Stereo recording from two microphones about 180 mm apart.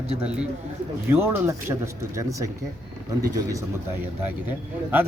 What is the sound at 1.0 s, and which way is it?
Speech, 10° right (ahead or behind).